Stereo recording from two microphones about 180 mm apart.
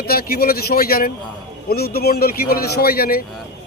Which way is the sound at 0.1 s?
55° left (ahead or behind).